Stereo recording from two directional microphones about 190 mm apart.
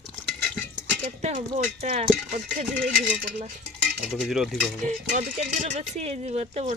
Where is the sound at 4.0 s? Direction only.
Centre (ahead or behind).